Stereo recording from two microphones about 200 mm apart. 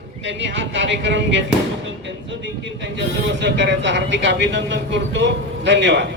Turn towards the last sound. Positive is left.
turn(degrees=-65)  # may be behind; listen again after turning